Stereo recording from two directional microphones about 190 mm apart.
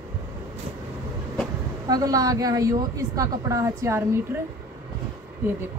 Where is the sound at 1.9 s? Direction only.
20° right (ahead or behind).